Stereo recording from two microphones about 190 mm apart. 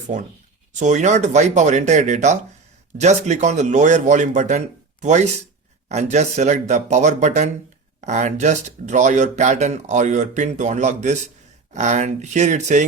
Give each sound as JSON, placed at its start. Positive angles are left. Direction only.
{"t": 0.7, "sound": "speech", "side_deg": -40}